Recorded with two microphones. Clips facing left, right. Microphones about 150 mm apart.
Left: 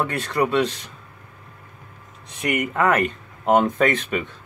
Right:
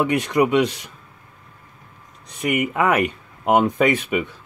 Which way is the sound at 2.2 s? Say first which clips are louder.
Right 2 dB; centre (ahead or behind).